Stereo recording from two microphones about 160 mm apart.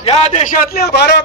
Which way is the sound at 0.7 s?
85° left.